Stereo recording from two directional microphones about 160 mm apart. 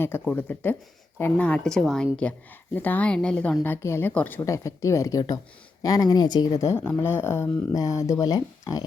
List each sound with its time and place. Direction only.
0.3 s a woman's voice: 10° left (ahead or behind)